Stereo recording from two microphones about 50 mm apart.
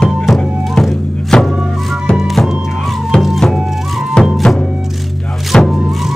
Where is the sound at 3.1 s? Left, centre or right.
Centre.